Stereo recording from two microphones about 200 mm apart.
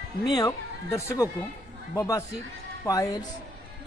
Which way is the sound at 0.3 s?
20° left (ahead or behind).